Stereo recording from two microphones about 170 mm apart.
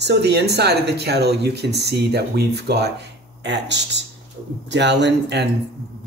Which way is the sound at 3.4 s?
90° right.